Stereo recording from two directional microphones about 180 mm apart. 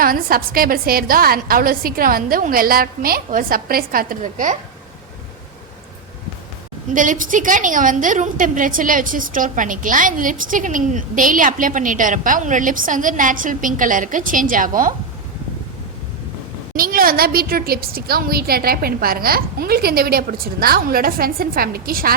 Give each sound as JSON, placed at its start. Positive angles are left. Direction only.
{"t": 0.0, "sound": "a woman's voice", "side_deg": -55}
{"t": 6.9, "sound": "a woman's voice", "side_deg": -45}
{"t": 16.7, "sound": "a woman's voice", "side_deg": -50}